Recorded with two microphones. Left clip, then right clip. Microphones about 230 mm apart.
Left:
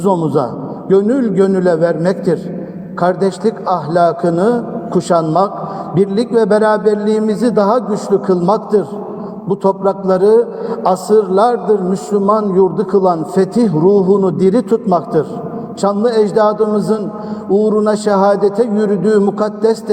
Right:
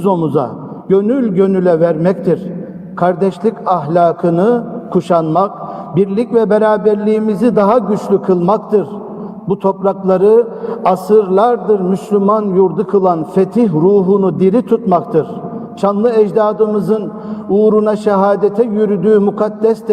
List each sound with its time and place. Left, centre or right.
0.0 s a man's voice: right